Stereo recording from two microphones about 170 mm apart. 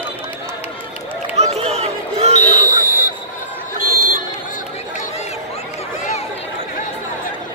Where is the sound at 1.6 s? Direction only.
40° right (ahead or behind).